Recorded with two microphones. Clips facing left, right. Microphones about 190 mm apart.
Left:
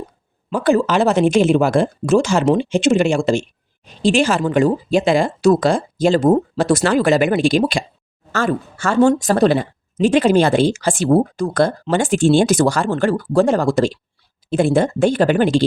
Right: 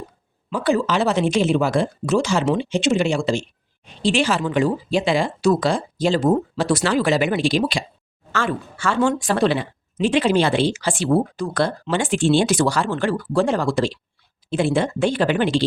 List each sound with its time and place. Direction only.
0.5 s a woman's voice: 45° left (ahead or behind)